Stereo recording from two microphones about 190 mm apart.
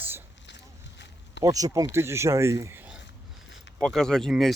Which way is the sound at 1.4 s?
20° right (ahead or behind).